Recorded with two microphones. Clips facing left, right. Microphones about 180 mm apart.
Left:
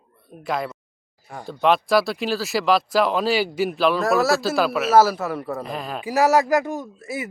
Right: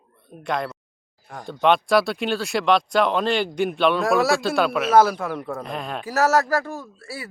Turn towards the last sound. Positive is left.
turn(degrees=20)  # may be behind; listen again after turning